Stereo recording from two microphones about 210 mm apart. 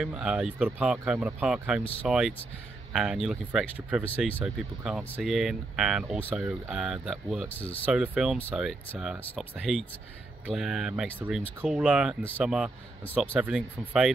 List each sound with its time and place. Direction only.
0.0 s speech: 5° right (ahead or behind)
7.8 s speech: 5° right (ahead or behind)